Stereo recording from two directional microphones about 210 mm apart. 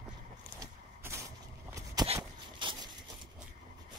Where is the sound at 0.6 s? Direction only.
15° right (ahead or behind).